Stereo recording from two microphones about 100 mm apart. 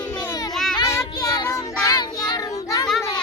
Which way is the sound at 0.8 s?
30° left (ahead or behind).